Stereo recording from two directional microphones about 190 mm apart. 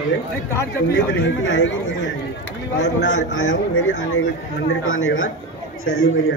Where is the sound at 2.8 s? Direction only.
90° left.